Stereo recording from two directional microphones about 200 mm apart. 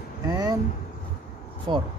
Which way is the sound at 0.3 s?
20° right (ahead or behind).